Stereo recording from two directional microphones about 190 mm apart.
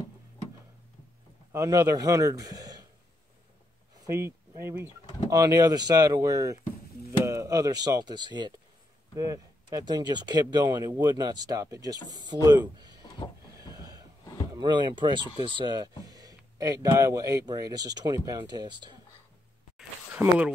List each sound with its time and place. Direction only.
1.5 s a man's voice: 15° right (ahead or behind)
4.0 s a man's voice: 15° right (ahead or behind)
13.7 s a sound: 20° right (ahead or behind)
14.5 s speech: 25° right (ahead or behind)
20.2 s a man's voice: 10° right (ahead or behind)